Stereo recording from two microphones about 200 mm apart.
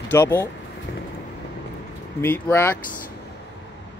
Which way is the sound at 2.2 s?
10° left (ahead or behind).